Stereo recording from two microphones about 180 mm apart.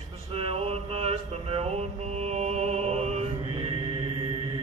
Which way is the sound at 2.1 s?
35° right (ahead or behind).